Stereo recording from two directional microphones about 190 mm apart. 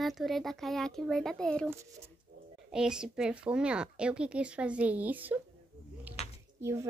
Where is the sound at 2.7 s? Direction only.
5° right (ahead or behind).